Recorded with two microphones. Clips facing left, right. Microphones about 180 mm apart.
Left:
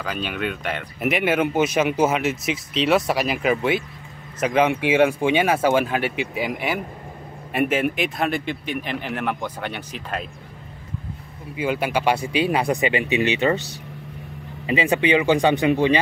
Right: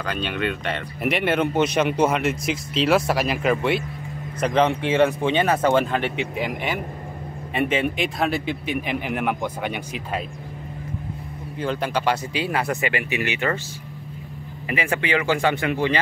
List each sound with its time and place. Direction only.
0.0 s speech: 5° left (ahead or behind)
11.5 s speech: 10° left (ahead or behind)
14.7 s speech: 20° left (ahead or behind)